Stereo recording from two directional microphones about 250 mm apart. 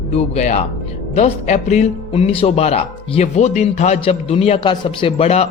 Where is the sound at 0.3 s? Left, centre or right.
Left.